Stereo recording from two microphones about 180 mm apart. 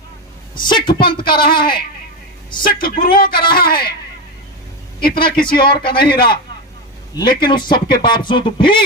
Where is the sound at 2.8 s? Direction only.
55° left (ahead or behind).